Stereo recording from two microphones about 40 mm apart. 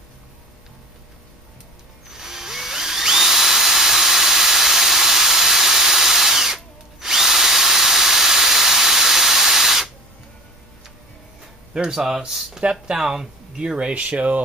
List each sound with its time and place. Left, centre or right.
2.0 s drill: centre
11.9 s speech: centre; by 14.4 s right